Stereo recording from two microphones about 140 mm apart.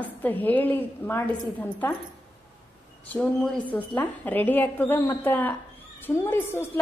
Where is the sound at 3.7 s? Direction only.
10° left (ahead or behind).